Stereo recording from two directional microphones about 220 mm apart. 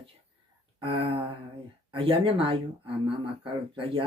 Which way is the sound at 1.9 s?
25° right (ahead or behind).